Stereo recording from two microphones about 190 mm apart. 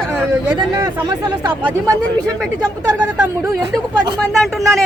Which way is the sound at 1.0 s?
20° right (ahead or behind).